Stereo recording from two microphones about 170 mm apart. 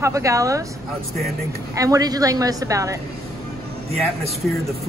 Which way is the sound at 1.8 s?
20° right (ahead or behind).